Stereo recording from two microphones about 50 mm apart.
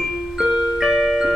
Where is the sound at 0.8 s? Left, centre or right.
Centre.